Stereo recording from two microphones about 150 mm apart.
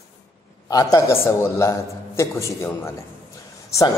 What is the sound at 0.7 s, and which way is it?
A man's voice, 20° left (ahead or behind).